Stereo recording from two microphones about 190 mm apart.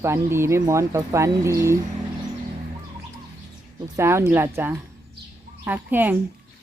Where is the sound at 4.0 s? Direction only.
15° right (ahead or behind).